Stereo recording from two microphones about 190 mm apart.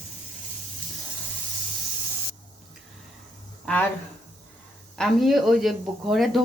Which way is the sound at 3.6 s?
5° left (ahead or behind).